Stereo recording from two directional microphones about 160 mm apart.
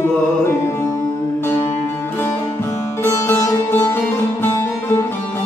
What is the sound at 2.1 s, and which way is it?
Music, 15° left (ahead or behind).